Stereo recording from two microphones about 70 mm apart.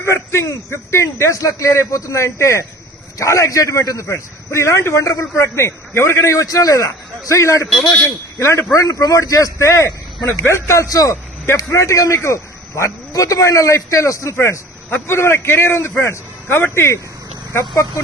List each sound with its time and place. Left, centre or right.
0.0 s a man's voice: left
10.8 s a man's voice: left